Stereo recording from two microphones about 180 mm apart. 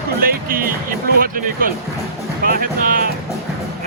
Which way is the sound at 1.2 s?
50° right (ahead or behind).